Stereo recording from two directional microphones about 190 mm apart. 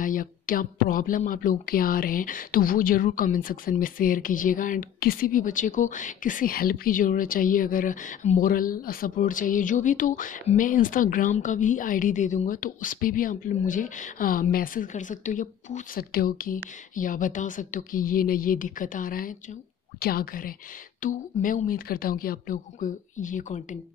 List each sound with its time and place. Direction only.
0.0 s speech: 45° left (ahead or behind)